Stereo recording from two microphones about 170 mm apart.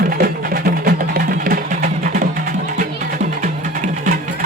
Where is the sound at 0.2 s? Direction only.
60° right (ahead or behind).